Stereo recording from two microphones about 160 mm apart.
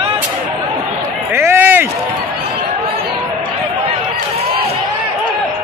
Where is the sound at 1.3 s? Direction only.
15° right (ahead or behind).